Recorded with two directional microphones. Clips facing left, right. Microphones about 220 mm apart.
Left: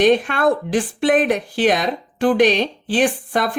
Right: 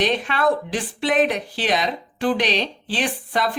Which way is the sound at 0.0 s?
50° left (ahead or behind).